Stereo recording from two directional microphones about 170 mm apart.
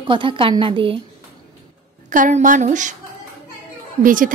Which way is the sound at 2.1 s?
50° right (ahead or behind).